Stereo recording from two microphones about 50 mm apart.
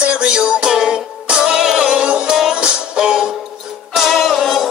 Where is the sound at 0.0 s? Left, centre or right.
Right.